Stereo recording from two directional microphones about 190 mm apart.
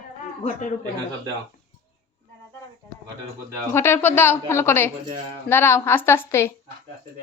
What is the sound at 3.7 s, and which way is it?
Speech, 15° left (ahead or behind).